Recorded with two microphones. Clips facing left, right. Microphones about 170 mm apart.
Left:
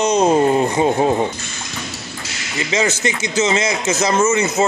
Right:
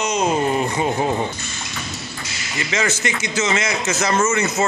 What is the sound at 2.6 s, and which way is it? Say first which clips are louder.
Speech: left 4 dB; 20° left (ahead or behind).